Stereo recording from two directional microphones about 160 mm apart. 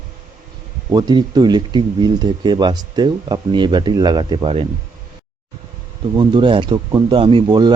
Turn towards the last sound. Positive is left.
turn(degrees=-25)  # may be behind; listen again after turning